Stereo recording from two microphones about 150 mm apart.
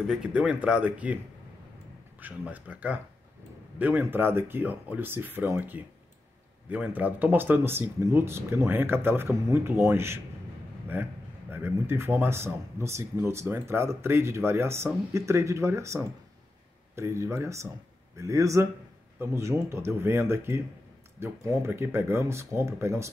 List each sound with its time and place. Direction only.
0.0 s speech: 5° right (ahead or behind)
11.5 s speech: 15° right (ahead or behind)